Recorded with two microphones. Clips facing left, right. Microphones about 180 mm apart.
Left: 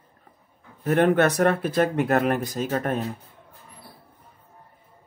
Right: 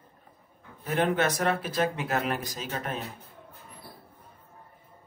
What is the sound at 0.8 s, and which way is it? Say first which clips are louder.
Speech: left 7 dB; 60° left (ahead or behind).